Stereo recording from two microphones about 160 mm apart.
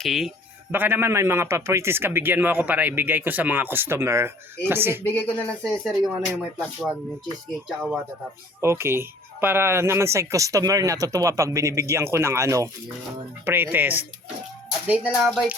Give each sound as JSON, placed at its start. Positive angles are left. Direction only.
{"t": 0.0, "sound": "speech", "side_deg": 0}
{"t": 0.7, "sound": "speech", "side_deg": -10}
{"t": 5.0, "sound": "speech", "side_deg": 10}
{"t": 8.6, "sound": "speech", "side_deg": -15}